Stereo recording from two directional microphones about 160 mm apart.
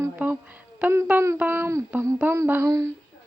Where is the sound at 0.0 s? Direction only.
15° right (ahead or behind).